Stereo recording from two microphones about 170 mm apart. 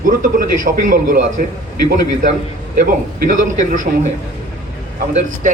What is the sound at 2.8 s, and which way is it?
A man's voice, 50° right (ahead or behind).